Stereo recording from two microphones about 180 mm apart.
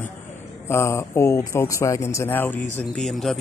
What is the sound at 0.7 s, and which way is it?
A man's voice, 15° left (ahead or behind).